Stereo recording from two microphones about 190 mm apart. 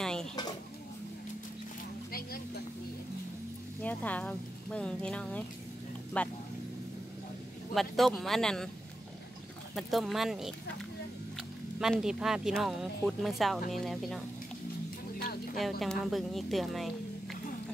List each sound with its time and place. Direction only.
0.0 s bird: 5° left (ahead or behind)
2.1 s vehicle: 50° left (ahead or behind)
3.8 s speech: 10° left (ahead or behind)
7.7 s speech: centre (ahead or behind)
9.8 s speech: centre (ahead or behind)
15.8 s speech: centre (ahead or behind)